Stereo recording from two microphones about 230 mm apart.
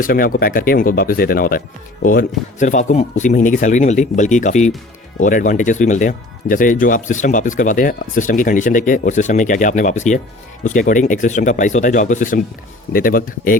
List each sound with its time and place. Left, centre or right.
0.0 s speech: left